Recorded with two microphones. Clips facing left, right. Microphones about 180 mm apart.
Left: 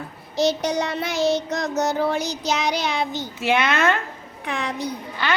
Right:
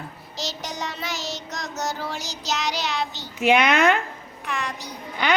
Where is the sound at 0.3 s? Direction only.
60° left (ahead or behind).